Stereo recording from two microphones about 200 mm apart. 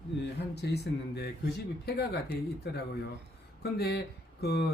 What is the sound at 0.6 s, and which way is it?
Speech, 55° left (ahead or behind).